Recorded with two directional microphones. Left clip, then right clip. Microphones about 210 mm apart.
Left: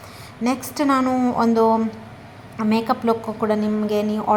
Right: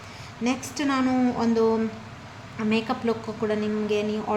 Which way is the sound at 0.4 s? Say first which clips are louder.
Left 6 dB; 20° left (ahead or behind).